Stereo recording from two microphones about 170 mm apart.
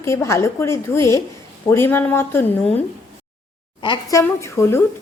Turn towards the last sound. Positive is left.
turn(degrees=15)  # may be behind; listen again after turning